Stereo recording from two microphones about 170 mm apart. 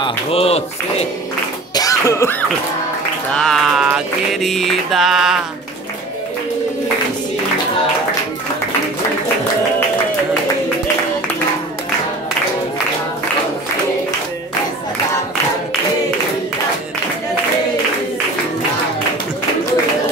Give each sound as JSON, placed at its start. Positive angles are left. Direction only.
{"t": 0.0, "sound": "speech", "side_deg": 35}
{"t": 1.8, "sound": "music", "side_deg": 20}
{"t": 3.3, "sound": "music", "side_deg": 0}